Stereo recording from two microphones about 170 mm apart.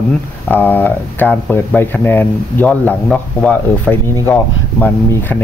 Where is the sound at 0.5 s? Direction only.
10° left (ahead or behind).